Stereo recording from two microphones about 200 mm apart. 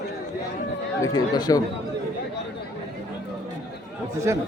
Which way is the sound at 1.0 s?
20° left (ahead or behind).